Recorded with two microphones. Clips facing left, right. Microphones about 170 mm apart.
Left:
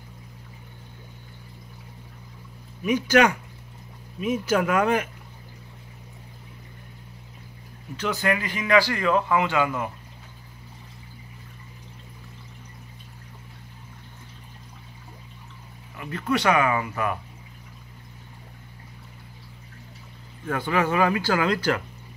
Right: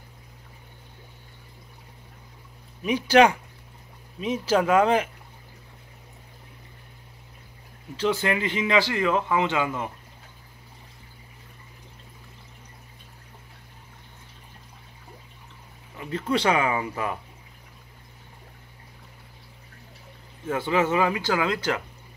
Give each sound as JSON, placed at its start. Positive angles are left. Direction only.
{"t": 2.8, "sound": "speech", "side_deg": -30}
{"t": 7.9, "sound": "speech", "side_deg": -30}
{"t": 16.1, "sound": "speech", "side_deg": -25}
{"t": 20.4, "sound": "speech", "side_deg": -25}